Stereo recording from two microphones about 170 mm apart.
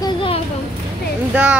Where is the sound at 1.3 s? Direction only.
10° right (ahead or behind).